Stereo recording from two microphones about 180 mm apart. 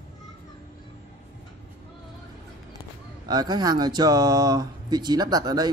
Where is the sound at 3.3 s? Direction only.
20° right (ahead or behind).